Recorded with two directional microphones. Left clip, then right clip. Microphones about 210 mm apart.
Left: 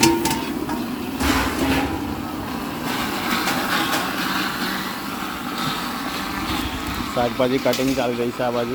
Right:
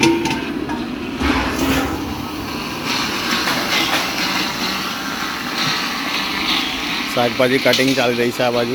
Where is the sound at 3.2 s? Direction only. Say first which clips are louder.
Right 3 dB; 35° left (ahead or behind).